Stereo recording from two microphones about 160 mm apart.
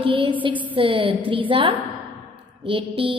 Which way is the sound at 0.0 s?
35° right (ahead or behind).